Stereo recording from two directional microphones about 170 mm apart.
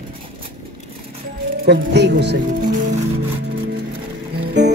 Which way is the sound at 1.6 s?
80° right.